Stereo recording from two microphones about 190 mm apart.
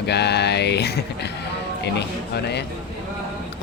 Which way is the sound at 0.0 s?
60° left (ahead or behind).